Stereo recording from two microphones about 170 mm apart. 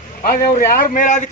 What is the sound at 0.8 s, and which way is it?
Speech, 50° left (ahead or behind).